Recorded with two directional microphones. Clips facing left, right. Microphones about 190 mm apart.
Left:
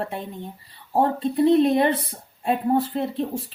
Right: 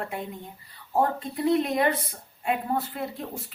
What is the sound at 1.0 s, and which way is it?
Speech, 30° left (ahead or behind).